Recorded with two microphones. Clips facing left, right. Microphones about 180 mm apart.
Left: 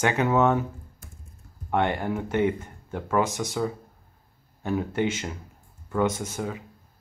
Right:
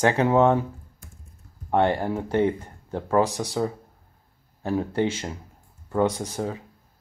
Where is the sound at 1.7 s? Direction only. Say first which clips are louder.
Right 3 dB; 35° right (ahead or behind).